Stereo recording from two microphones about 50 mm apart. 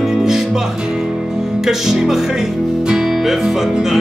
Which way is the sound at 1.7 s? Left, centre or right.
Centre.